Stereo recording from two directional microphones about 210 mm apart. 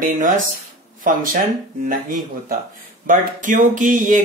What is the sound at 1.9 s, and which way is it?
Speech, 40° right (ahead or behind).